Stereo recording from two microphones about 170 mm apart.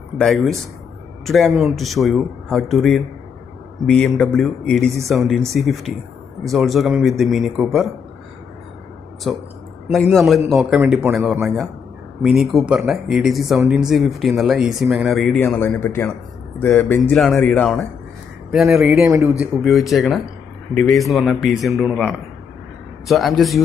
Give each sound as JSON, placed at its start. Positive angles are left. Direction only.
{"t": 0.2, "sound": "speech", "side_deg": 0}
{"t": 9.3, "sound": "speech", "side_deg": 0}
{"t": 19.0, "sound": "speech", "side_deg": -15}
{"t": 19.4, "sound": "speech", "side_deg": 0}